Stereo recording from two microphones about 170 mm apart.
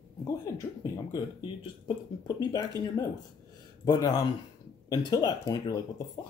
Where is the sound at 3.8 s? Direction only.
20° left (ahead or behind).